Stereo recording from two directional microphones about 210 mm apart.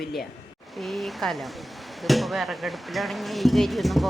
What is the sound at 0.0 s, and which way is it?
A man's voice, centre (ahead or behind).